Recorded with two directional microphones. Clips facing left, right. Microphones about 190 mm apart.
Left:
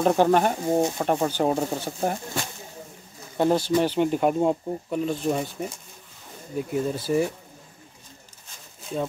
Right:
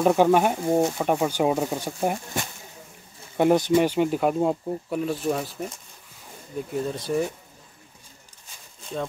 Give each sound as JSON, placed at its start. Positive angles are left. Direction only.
{"t": 0.0, "sound": "speech", "side_deg": -5}
{"t": 3.3, "sound": "speech", "side_deg": -15}